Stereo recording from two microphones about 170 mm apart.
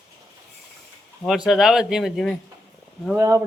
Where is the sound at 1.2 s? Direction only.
Centre (ahead or behind).